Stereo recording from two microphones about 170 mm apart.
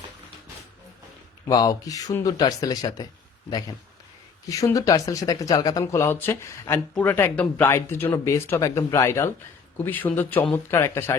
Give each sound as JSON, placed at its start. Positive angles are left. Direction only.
{"t": 1.5, "sound": "speech", "side_deg": 20}
{"t": 4.4, "sound": "speech", "side_deg": 20}